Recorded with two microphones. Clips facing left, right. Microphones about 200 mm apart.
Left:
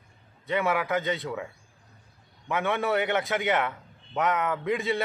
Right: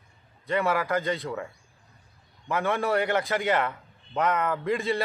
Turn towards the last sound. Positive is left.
turn(degrees=0)  # may be behind; listen again after turning